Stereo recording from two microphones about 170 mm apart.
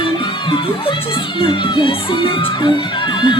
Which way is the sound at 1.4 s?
30° left (ahead or behind).